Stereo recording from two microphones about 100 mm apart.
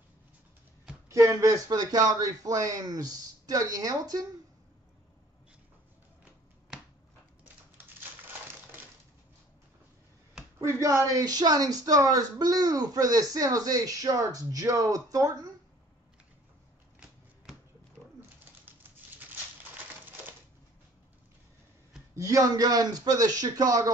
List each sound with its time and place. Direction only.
1.0 s speech: 25° right (ahead or behind)
10.6 s speech: 30° right (ahead or behind)
18.7 s typewriter: 20° right (ahead or behind)
22.1 s speech: 35° right (ahead or behind)